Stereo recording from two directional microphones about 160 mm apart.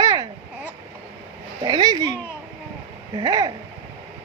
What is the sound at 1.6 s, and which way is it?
Speech, 25° right (ahead or behind).